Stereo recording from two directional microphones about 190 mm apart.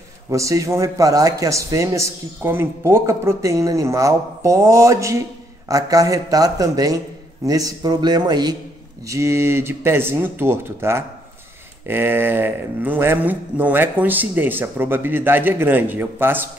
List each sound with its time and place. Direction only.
0.3 s a man's voice: 15° right (ahead or behind)